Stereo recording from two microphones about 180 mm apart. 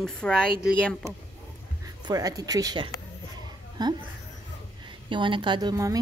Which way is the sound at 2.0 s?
20° right (ahead or behind).